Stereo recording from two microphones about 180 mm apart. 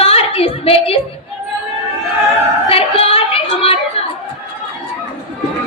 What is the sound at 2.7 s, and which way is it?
Yodeling, 30° left (ahead or behind).